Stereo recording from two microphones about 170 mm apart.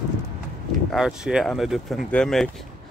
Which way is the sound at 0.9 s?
5° right (ahead or behind).